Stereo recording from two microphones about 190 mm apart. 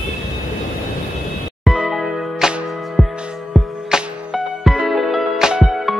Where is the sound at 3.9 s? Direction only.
Centre (ahead or behind).